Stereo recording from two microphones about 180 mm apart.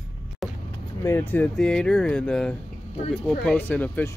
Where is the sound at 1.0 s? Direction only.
10° left (ahead or behind).